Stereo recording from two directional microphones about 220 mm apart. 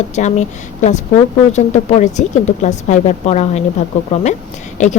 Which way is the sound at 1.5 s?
30° left (ahead or behind).